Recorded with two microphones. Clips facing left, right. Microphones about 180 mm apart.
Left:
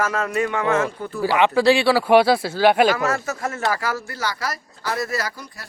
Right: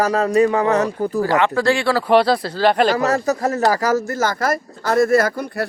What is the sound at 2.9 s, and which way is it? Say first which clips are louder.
Speech: right 6 dB; 35° right (ahead or behind).